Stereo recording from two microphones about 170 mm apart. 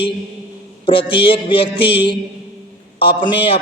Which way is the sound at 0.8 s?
30° left (ahead or behind).